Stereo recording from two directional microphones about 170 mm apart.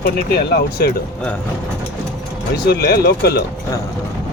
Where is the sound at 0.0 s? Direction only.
70° left (ahead or behind).